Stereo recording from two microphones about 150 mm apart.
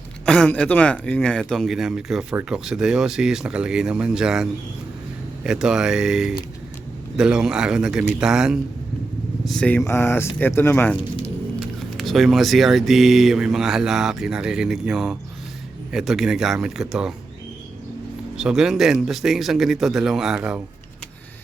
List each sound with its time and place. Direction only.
0.3 s speech: 5° left (ahead or behind)
10.9 s squish: 35° left (ahead or behind)
11.9 s speech: centre (ahead or behind)
18.3 s speech: 5° right (ahead or behind)